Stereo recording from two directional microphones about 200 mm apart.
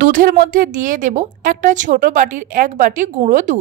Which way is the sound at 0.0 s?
45° right (ahead or behind).